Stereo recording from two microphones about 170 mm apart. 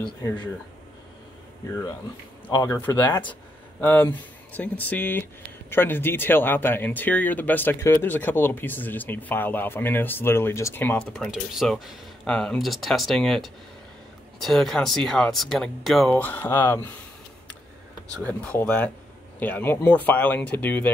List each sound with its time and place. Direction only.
2.5 s speech: 15° left (ahead or behind)
18.2 s speech: 10° left (ahead or behind)